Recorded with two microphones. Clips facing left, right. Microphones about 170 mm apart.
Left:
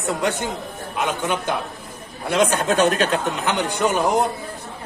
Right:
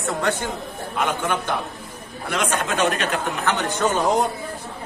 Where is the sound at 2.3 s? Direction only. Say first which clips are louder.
Left 5 dB; 30° left (ahead or behind).